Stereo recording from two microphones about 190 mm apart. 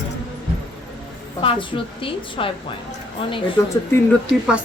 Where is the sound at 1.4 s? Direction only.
25° left (ahead or behind).